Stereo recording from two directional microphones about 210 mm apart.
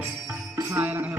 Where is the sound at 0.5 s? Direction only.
10° right (ahead or behind).